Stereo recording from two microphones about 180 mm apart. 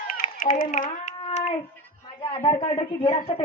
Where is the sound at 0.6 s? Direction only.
45° left (ahead or behind).